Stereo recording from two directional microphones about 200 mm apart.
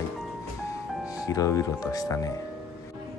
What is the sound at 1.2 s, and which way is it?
Speech, 20° left (ahead or behind).